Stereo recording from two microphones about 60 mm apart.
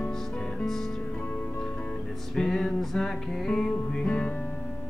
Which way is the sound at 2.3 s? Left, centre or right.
Centre.